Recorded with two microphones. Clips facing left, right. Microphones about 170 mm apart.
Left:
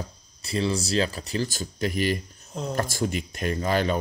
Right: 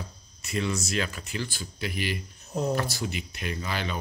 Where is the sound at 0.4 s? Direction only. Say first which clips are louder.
Left 4 dB; 30° left (ahead or behind).